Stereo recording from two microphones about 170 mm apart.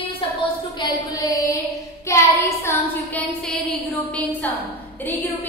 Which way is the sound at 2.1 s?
15° left (ahead or behind).